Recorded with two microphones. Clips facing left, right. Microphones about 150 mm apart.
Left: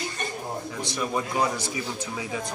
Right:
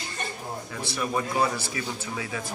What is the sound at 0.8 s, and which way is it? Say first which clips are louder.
A man's voice: right 1 dB; 15° left (ahead or behind).